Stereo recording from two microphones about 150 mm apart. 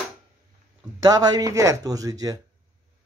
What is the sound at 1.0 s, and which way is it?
Speech, 25° right (ahead or behind).